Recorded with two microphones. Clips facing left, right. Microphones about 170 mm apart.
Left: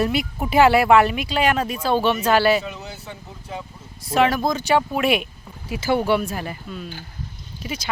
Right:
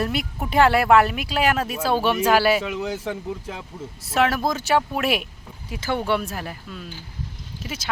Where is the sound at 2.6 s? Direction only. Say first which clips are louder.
Right 7 dB; 90° right.